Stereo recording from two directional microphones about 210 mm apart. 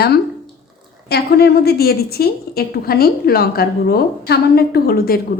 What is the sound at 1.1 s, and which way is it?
A woman's voice, 50° left (ahead or behind).